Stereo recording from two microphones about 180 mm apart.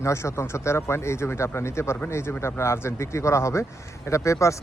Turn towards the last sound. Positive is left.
turn(degrees=15)  # may be behind; listen again after turning